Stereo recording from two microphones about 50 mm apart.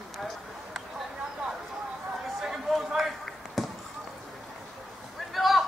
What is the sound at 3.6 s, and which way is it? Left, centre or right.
Basketball bounce, centre.